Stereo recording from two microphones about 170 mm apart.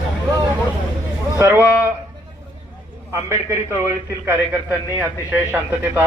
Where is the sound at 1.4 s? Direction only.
15° right (ahead or behind).